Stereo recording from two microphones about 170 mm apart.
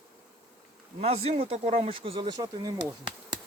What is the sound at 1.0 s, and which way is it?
Speech, 35° right (ahead or behind).